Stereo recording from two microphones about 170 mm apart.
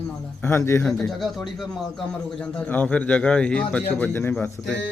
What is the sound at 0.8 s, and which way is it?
A man's voice, centre (ahead or behind).